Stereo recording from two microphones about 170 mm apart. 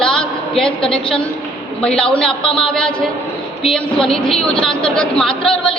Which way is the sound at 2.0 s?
5° left (ahead or behind).